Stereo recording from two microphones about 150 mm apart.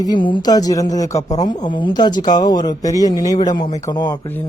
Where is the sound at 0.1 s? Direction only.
30° left (ahead or behind).